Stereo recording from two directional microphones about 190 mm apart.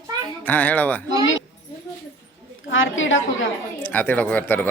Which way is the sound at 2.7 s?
90° left.